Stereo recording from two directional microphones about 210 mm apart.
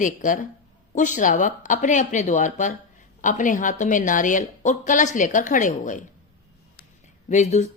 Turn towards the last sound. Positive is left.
turn(degrees=35)  # may be behind; listen again after turning